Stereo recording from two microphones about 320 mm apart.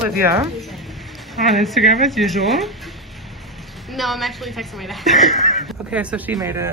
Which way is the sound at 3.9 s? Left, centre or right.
Centre.